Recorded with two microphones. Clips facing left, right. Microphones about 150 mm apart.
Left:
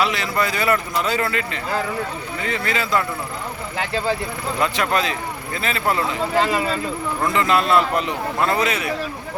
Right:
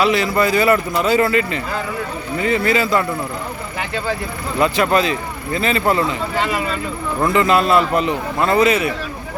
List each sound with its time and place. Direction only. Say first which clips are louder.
0.0 s a man's voice: right 5 dB; centre (ahead or behind)
3.9 s speech: left 1 dB; 30° left (ahead or behind)
4.6 s a man's voice: right 6 dB; 5° right (ahead or behind)
6.4 s speech: right 1 dB; 30° left (ahead or behind)
7.3 s a man's voice: right 3 dB; centre (ahead or behind)